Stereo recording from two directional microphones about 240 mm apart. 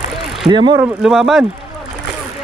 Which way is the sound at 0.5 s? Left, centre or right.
Centre.